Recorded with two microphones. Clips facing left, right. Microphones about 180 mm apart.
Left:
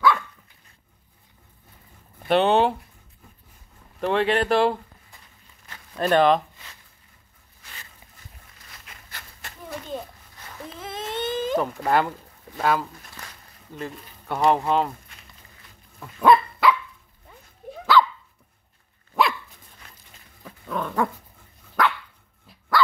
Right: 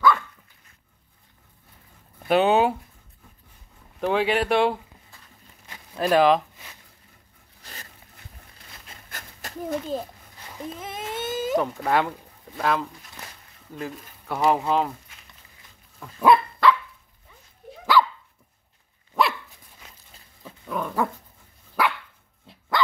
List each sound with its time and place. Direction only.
2.2 s speech: 5° right (ahead or behind)
4.0 s speech: centre (ahead or behind)
5.9 s speech: 5° right (ahead or behind)
7.6 s a sound: 40° right (ahead or behind)
9.1 s a sound: 40° right (ahead or behind)
10.4 s babbling: 15° right (ahead or behind); by 12.1 s centre (ahead or behind)
12.5 s speech: 5° left (ahead or behind)
16.0 s dog: 5° right (ahead or behind)
17.9 s dog: 10° right (ahead or behind)
19.2 s dog: centre (ahead or behind)
20.6 s dog: 5° right (ahead or behind)